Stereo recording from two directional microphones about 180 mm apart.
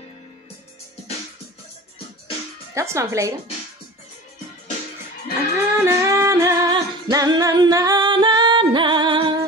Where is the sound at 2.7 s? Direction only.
15° right (ahead or behind).